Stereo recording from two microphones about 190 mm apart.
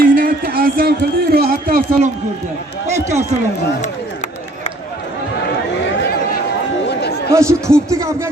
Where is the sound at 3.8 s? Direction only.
35° left (ahead or behind).